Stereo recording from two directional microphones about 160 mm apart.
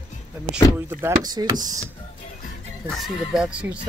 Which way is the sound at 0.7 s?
20° right (ahead or behind).